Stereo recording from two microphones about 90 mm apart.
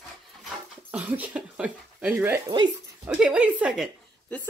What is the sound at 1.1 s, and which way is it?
Speech, 25° right (ahead or behind).